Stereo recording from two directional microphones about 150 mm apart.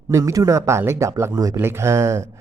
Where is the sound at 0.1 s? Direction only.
20° right (ahead or behind).